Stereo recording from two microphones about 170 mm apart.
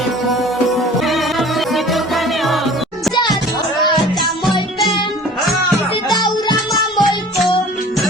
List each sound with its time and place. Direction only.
0.9 s music: centre (ahead or behind)
6.1 s music: 25° left (ahead or behind)